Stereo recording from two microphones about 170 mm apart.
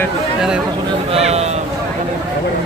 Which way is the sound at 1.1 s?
40° right (ahead or behind).